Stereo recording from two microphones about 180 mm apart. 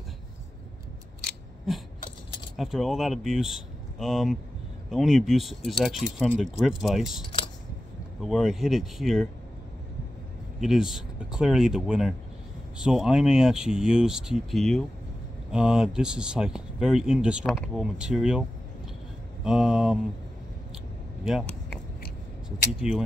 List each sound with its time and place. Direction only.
2.5 s speech: centre (ahead or behind)
8.2 s speech: centre (ahead or behind)
10.6 s speech: centre (ahead or behind)
19.4 s speech: 5° right (ahead or behind)
21.2 s speech: 5° right (ahead or behind)
22.8 s speech: 5° right (ahead or behind)